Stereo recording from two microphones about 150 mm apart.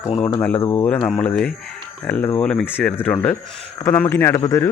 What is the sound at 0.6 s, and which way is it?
Speech, 15° left (ahead or behind).